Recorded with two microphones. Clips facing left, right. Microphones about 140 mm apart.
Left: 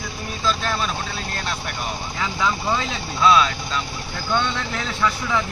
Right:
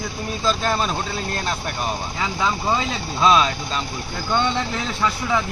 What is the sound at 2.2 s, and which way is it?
Speech, 15° right (ahead or behind).